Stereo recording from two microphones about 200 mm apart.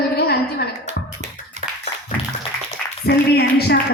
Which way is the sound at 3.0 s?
55° left (ahead or behind).